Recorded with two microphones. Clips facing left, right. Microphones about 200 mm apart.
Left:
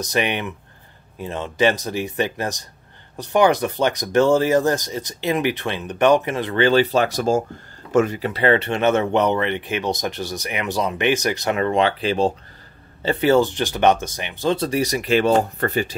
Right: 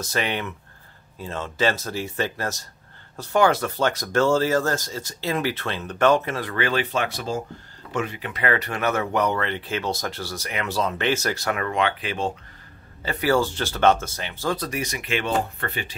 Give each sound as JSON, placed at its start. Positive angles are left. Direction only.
{"t": 0.0, "sound": "speech", "side_deg": 15}